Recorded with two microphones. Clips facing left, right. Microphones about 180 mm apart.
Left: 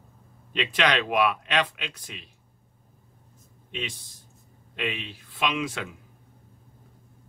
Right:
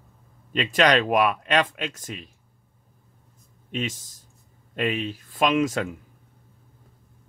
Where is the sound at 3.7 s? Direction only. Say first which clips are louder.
Right 6 dB; 45° right (ahead or behind).